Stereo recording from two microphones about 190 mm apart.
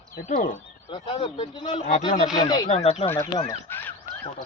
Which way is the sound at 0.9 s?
25° left (ahead or behind).